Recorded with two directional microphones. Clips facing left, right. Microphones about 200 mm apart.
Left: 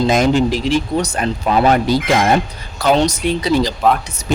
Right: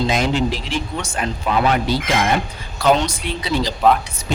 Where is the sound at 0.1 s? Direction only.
45° left (ahead or behind).